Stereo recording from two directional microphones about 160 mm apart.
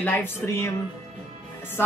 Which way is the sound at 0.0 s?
15° left (ahead or behind).